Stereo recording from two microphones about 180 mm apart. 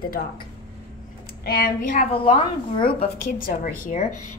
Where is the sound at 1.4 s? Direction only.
60° left (ahead or behind).